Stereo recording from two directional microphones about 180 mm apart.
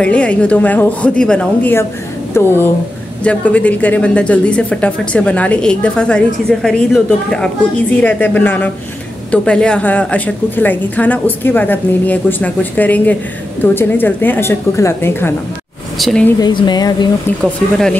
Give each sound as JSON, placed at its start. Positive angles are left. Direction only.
{"t": 0.0, "sound": "a woman's voice", "side_deg": 5}
{"t": 16.3, "sound": "speech", "side_deg": 25}